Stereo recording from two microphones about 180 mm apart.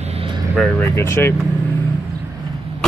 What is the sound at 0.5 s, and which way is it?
Speech, 10° left (ahead or behind).